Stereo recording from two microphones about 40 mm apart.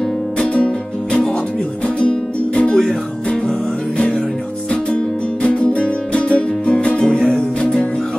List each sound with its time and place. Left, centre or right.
2.0 s music: left
5.4 s music: left